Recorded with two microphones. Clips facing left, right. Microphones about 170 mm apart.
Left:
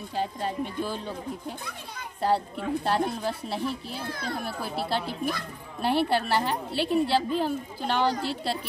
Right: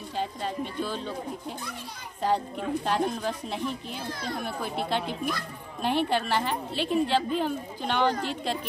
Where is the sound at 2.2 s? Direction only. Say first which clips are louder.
Left 1 dB; 10° left (ahead or behind).